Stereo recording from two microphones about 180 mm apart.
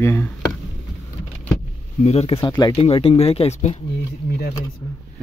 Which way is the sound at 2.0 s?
35° left (ahead or behind).